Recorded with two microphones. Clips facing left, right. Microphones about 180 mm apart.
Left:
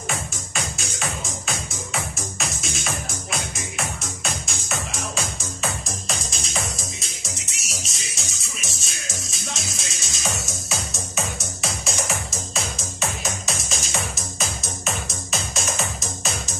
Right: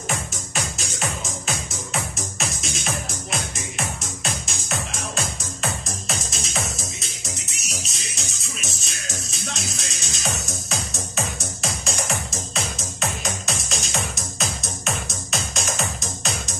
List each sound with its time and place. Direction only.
2.3 s music: centre (ahead or behind)